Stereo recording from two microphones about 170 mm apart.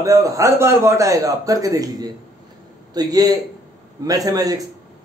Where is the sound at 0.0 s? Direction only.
20° right (ahead or behind).